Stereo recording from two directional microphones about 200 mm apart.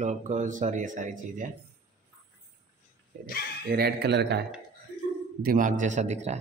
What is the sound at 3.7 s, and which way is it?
Speech, 55° right (ahead or behind).